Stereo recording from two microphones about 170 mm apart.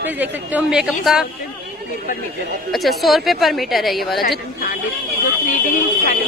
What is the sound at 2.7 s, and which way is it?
A woman's voice, centre (ahead or behind).